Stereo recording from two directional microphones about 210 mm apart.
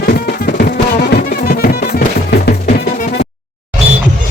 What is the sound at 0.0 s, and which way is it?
Music, 45° left (ahead or behind).